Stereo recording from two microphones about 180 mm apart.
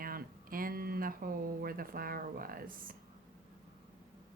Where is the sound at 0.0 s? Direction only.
55° right (ahead or behind).